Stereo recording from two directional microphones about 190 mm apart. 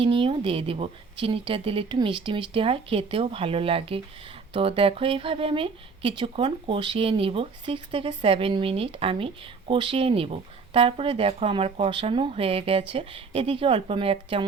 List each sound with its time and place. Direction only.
0.0 s speech: 25° right (ahead or behind)